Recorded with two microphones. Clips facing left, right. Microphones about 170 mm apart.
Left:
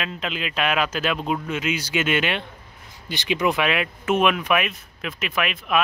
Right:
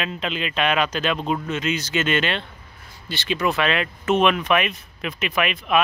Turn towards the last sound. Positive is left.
turn(degrees=0)  # may be behind; listen again after turning